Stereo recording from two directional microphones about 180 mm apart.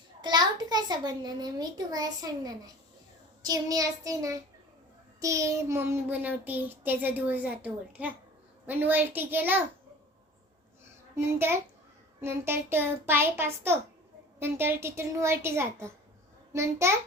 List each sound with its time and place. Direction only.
0.2 s a child's voice: 25° right (ahead or behind)
11.1 s a child's voice: 15° right (ahead or behind)